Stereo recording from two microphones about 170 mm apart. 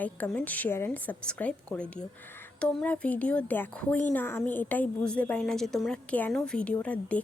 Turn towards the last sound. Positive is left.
turn(degrees=5)  # may be behind; listen again after turning